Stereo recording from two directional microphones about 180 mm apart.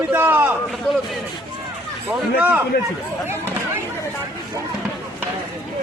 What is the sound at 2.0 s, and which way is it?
Speech, 10° right (ahead or behind).